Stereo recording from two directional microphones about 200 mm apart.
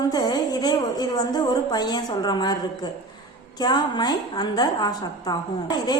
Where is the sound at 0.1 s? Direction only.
20° left (ahead or behind).